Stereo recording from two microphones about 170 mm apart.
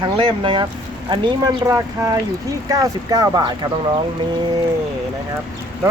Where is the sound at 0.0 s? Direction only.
30° right (ahead or behind).